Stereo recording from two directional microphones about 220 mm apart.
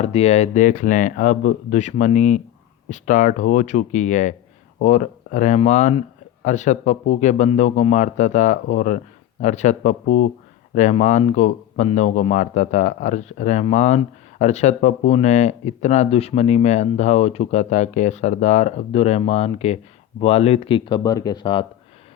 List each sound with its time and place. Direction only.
0.0 s a man's voice: 30° left (ahead or behind)